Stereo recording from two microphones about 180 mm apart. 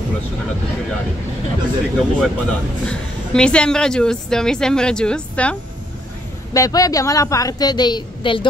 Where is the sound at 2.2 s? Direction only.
5° left (ahead or behind).